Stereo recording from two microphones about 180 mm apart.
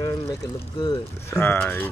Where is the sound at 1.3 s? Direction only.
10° left (ahead or behind).